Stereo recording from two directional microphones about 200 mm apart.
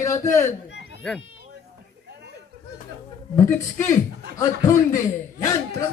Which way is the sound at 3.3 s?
15° left (ahead or behind).